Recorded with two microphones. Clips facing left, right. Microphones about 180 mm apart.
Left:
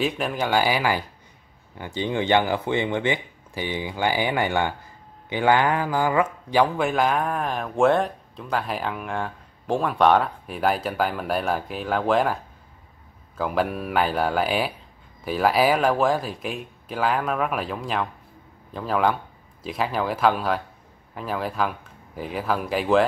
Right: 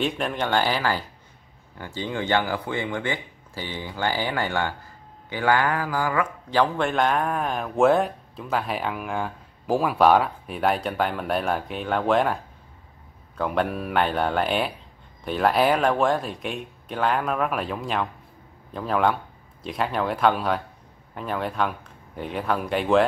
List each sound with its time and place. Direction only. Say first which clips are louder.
0.0 s a man's voice: left 1 dB; 5° left (ahead or behind)
13.4 s a man's voice: even; centre (ahead or behind)